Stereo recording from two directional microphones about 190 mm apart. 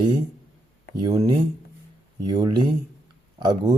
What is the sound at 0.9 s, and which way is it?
Speech, 25° right (ahead or behind).